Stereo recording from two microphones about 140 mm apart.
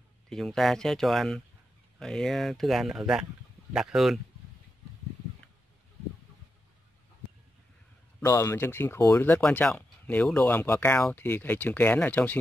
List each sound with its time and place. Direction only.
0.3 s speech: 5° left (ahead or behind)
8.2 s speech: 20° left (ahead or behind)